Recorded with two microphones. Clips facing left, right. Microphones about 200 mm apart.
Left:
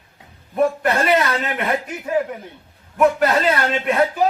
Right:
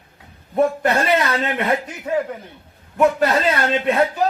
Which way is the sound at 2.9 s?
30° right (ahead or behind).